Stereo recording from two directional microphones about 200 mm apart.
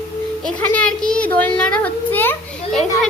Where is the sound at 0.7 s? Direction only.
5° left (ahead or behind).